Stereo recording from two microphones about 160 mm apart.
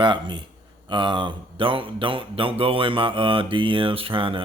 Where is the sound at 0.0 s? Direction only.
30° right (ahead or behind).